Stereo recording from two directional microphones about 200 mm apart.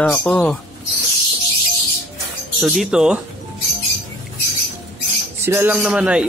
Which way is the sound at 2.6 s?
Centre (ahead or behind).